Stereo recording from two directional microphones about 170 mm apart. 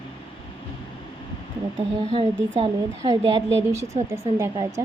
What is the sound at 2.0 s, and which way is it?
Speech, 40° right (ahead or behind).